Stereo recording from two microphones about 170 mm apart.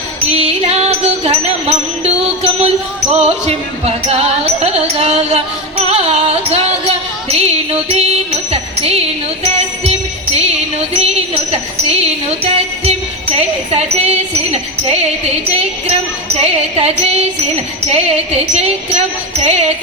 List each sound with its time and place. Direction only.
0.3 s music: 35° right (ahead or behind)
10.3 s music: 40° right (ahead or behind)
16.4 s music: 35° right (ahead or behind)